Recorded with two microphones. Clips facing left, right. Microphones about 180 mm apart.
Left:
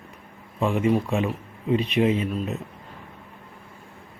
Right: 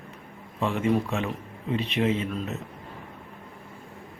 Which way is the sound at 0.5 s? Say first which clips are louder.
Left 3 dB; 10° left (ahead or behind).